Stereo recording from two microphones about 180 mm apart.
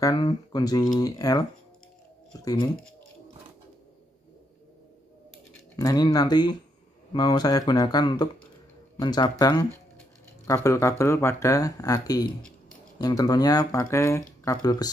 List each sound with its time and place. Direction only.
0.0 s speech: 25° left (ahead or behind)
2.4 s speech: 25° left (ahead or behind)
5.8 s speech: 20° left (ahead or behind)
12.4 s a sound: 5° left (ahead or behind)
13.0 s speech: 20° left (ahead or behind)